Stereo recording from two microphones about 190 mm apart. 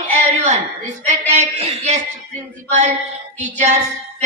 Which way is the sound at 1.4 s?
35° right (ahead or behind).